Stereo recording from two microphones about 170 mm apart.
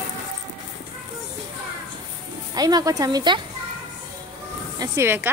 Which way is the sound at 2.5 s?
25° right (ahead or behind).